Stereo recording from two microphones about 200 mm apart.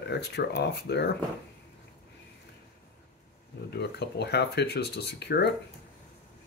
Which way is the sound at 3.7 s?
55° left (ahead or behind).